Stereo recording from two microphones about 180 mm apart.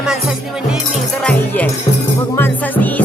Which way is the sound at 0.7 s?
Centre (ahead or behind).